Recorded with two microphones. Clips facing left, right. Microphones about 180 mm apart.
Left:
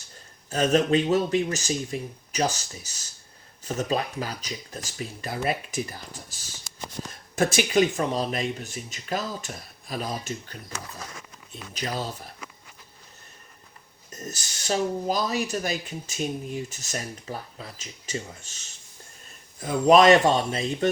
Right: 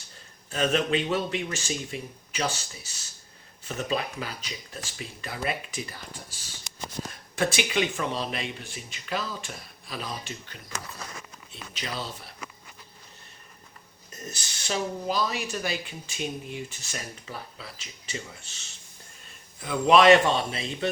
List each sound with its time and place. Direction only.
0.5 s speech: 40° left (ahead or behind)
6.7 s a sound: 20° right (ahead or behind)
7.3 s speech: 45° left (ahead or behind)
14.1 s speech: 40° left (ahead or behind)
19.5 s speech: 40° left (ahead or behind)